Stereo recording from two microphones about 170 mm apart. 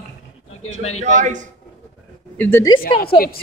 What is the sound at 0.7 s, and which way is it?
Speech, 45° right (ahead or behind).